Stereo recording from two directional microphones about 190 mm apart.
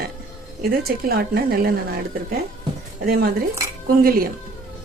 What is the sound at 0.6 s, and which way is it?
Speech, 50° right (ahead or behind).